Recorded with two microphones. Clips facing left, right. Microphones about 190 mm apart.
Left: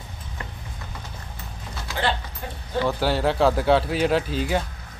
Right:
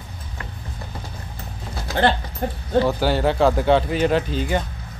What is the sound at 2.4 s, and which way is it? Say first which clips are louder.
Speech: right 13 dB; 55° right (ahead or behind).